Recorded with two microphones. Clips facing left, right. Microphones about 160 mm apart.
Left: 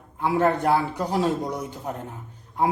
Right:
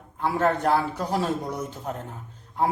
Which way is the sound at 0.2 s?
15° left (ahead or behind).